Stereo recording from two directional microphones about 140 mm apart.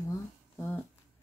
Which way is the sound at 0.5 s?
15° left (ahead or behind).